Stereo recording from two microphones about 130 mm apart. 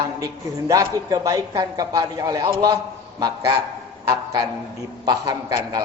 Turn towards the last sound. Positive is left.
turn(degrees=-30)  # may be behind; listen again after turning